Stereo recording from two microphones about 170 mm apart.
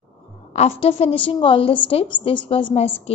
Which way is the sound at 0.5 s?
40° left (ahead or behind).